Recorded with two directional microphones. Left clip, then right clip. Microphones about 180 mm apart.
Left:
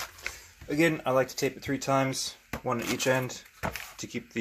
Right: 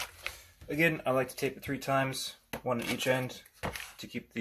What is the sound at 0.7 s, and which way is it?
Speech, 20° left (ahead or behind).